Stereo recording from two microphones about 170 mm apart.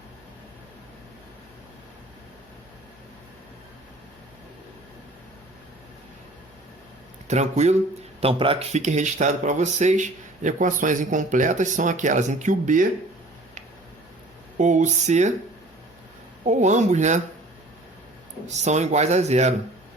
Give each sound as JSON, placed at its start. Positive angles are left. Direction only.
{"t": 7.3, "sound": "speech", "side_deg": -40}
{"t": 8.2, "sound": "speech", "side_deg": -30}
{"t": 14.6, "sound": "speech", "side_deg": -45}
{"t": 16.4, "sound": "speech", "side_deg": -45}
{"t": 18.4, "sound": "speech", "side_deg": -40}